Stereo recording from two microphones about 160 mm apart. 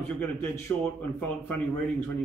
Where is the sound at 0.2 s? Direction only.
15° left (ahead or behind).